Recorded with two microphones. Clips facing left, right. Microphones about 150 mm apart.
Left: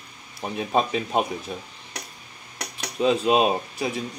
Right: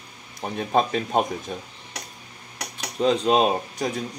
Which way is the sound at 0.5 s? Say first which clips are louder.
Right 1 dB; 5° left (ahead or behind).